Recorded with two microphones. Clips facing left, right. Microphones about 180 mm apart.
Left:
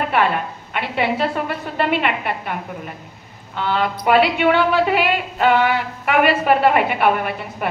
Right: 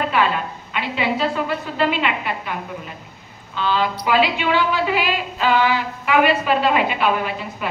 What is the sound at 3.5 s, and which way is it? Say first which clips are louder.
A woman's voice: even; 60° left (ahead or behind).